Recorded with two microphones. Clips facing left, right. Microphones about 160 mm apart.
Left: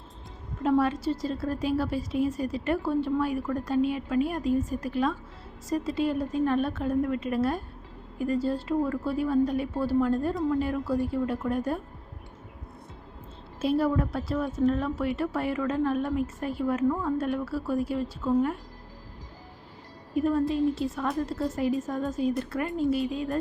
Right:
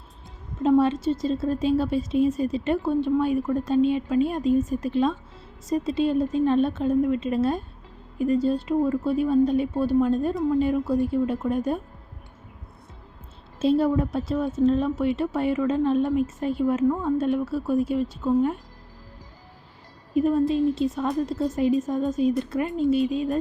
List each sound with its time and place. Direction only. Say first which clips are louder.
0.6 s a woman's voice: right 5 dB; 20° right (ahead or behind)
13.6 s a woman's voice: right 4 dB; 25° right (ahead or behind)
20.1 s a woman's voice: right 4 dB; 20° right (ahead or behind)